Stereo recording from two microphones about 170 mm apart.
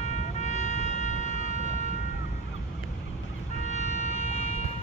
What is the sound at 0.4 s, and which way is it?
Music, 40° left (ahead or behind).